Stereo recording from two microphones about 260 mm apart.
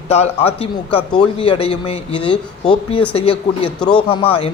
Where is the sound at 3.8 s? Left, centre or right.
Centre.